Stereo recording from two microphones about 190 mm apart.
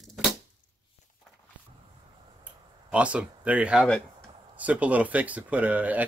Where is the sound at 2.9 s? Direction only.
5° right (ahead or behind).